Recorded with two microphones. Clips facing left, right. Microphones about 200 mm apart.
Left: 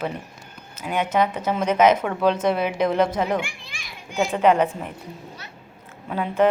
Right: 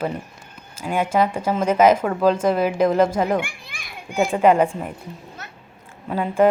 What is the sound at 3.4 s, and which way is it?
Speech, 55° right (ahead or behind).